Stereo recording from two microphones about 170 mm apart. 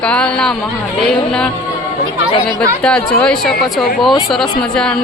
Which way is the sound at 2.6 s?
5° left (ahead or behind).